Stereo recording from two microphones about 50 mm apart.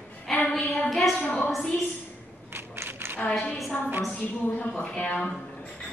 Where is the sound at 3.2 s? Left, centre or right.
Centre.